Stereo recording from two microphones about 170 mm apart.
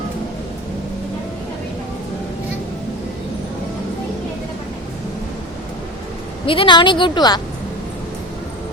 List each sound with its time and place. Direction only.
6.4 s a woman's voice: 30° left (ahead or behind)